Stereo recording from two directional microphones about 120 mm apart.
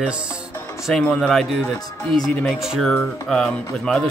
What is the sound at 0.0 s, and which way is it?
Speech, 10° right (ahead or behind).